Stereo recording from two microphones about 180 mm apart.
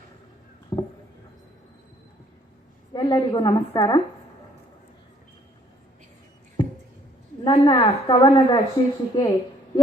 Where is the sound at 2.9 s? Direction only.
25° left (ahead or behind).